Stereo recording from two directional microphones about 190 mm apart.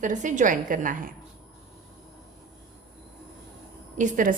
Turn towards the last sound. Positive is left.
turn(degrees=-40)  # may be behind; listen again after turning